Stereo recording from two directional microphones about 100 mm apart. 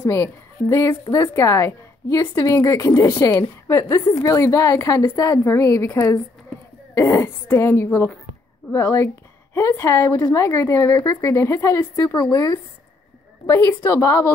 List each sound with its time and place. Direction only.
0.0 s a woman's voice: 30° left (ahead or behind)